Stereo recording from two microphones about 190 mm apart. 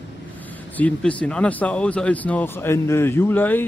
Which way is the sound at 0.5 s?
10° left (ahead or behind).